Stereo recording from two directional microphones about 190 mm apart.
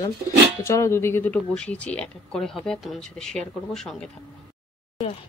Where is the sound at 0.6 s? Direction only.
15° left (ahead or behind).